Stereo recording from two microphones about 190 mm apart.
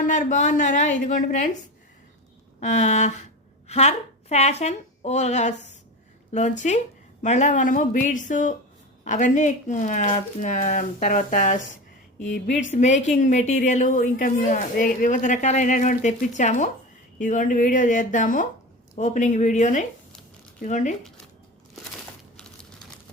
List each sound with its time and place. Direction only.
0.0 s a woman's voice: 45° left (ahead or behind)
2.6 s a woman's voice: 40° left (ahead or behind)
6.6 s a woman's voice: 40° left (ahead or behind)